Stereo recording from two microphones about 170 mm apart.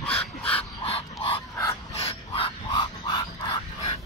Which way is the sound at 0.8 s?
35° left (ahead or behind).